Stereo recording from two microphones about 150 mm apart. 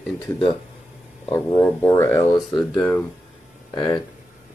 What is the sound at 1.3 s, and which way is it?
Speech, 25° left (ahead or behind).